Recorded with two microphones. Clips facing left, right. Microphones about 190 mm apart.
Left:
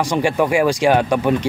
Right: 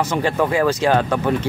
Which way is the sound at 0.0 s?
15° left (ahead or behind).